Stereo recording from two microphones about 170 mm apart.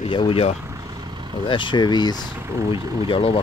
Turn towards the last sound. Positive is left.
turn(degrees=30)  # may be behind; listen again after turning